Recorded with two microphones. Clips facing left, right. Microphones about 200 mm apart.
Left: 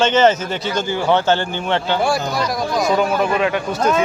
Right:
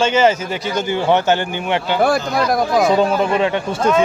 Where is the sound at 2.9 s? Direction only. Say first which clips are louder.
Right 2 dB; 25° right (ahead or behind).